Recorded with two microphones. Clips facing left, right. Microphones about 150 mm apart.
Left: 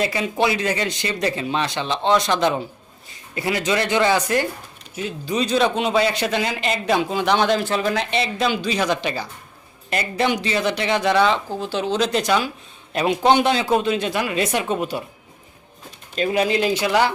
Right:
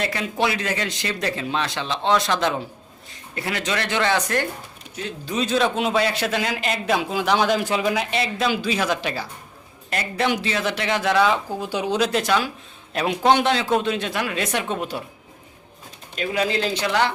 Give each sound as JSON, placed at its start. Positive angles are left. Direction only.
{"t": 0.0, "sound": "a man's voice", "side_deg": 5}
{"t": 16.1, "sound": "speech", "side_deg": 30}